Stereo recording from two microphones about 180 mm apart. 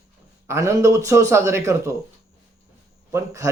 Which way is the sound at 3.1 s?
15° right (ahead or behind).